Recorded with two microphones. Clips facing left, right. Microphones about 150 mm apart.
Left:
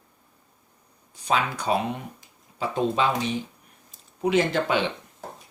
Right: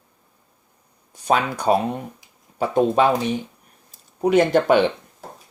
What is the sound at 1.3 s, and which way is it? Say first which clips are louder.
Speech: right 5 dB; 50° right (ahead or behind).